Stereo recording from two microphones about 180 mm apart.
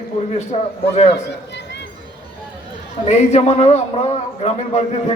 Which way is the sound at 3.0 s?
35° left (ahead or behind).